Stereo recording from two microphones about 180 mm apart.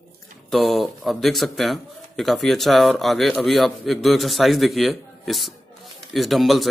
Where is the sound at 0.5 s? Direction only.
Centre (ahead or behind).